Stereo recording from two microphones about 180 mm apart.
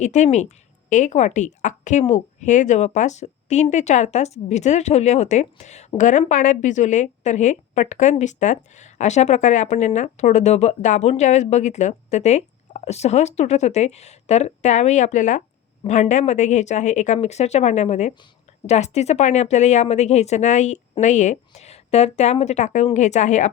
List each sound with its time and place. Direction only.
0.0 s a woman's voice: 40° left (ahead or behind)